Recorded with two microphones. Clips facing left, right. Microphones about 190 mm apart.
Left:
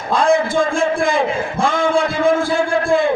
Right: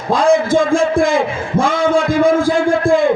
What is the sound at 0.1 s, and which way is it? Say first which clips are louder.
Speech: right 3 dB; 90° right.